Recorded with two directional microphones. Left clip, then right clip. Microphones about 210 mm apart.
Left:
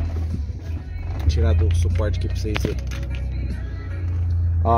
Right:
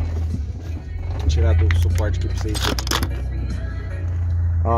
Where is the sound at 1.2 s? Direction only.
15° left (ahead or behind).